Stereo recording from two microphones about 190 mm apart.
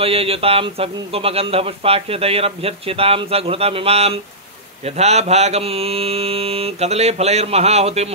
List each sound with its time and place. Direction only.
0.0 s a man's voice: 30° right (ahead or behind)